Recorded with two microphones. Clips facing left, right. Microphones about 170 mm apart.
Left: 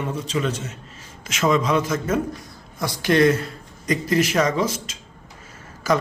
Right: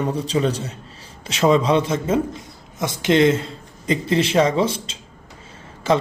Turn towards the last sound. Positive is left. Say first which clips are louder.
# right 2 dB
turn(degrees=-25)  # may be behind; listen again after turning